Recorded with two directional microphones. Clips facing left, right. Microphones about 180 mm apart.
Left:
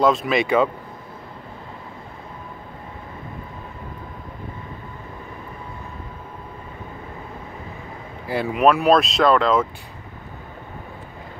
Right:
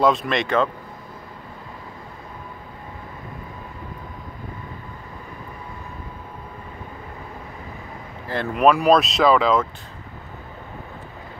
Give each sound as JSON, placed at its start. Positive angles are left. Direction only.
{"t": 0.0, "sound": "speech", "side_deg": 0}
{"t": 8.3, "sound": "speech", "side_deg": 5}